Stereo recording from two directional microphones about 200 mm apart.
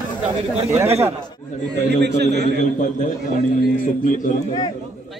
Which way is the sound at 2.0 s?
60° right (ahead or behind).